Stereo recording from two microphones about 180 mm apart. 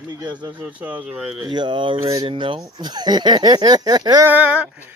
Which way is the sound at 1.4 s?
25° right (ahead or behind).